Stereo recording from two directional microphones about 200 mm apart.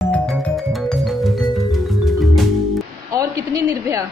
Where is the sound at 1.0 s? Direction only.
Centre (ahead or behind).